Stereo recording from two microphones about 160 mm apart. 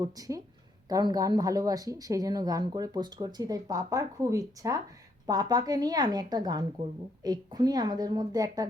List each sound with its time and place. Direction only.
0.0 s speech: 20° right (ahead or behind)